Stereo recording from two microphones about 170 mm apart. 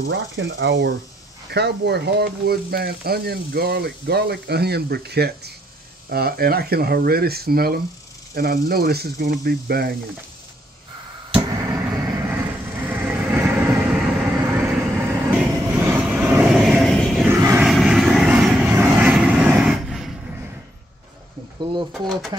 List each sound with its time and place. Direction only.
0.0 s speech: 80° right
1.5 s speech: 80° right
11.4 s vehicle: 20° right (ahead or behind); by 17.3 s centre (ahead or behind)
17.3 s vehicle: 15° right (ahead or behind)
17.6 s vehicle: centre (ahead or behind)
22.0 s speech: centre (ahead or behind)